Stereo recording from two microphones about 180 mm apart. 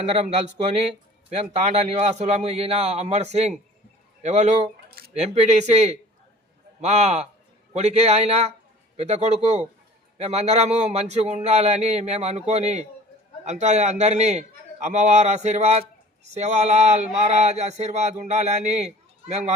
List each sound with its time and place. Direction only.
0.0 s a man's voice: 35° right (ahead or behind)